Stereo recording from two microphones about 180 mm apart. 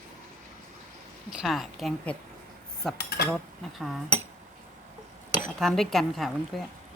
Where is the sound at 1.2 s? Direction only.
5° right (ahead or behind).